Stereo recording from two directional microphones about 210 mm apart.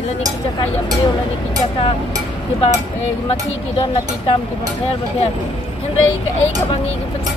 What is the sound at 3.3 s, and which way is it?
A woman's voice, 25° left (ahead or behind).